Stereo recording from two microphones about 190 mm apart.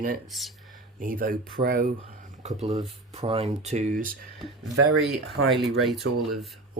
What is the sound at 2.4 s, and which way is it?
Speech, 35° right (ahead or behind).